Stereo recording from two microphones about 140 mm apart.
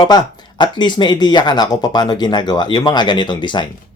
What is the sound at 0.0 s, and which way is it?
Speech, 30° left (ahead or behind).